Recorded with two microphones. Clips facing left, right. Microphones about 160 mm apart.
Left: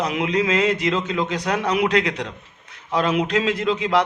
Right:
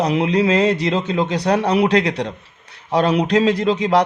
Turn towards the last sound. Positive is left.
turn(degrees=-40)  # may be behind; listen again after turning